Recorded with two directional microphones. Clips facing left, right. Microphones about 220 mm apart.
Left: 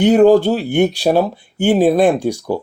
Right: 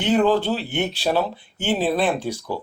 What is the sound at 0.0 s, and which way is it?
Speech, 45° left (ahead or behind).